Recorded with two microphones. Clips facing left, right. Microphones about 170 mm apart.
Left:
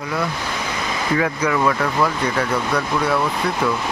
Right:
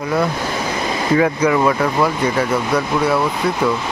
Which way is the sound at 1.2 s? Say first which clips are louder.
Right 4 dB; 20° right (ahead or behind).